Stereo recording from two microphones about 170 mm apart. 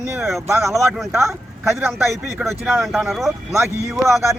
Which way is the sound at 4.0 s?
15° right (ahead or behind).